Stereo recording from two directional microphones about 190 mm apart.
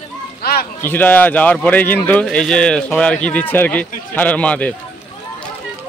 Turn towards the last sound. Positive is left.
turn(degrees=5)  # may be behind; listen again after turning